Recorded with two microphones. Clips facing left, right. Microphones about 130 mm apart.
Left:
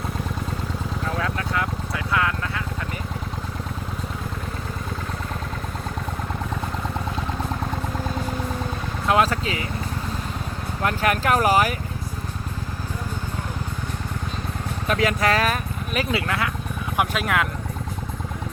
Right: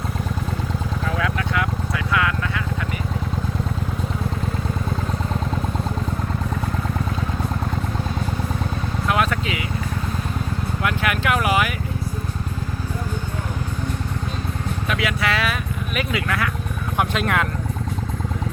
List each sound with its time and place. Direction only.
9.0 s vehicle: 30° left (ahead or behind)
10.8 s a sound: 40° left (ahead or behind)
14.8 s speech: 40° left (ahead or behind)
16.0 s speech: 25° left (ahead or behind)
17.0 s vehicle: centre (ahead or behind)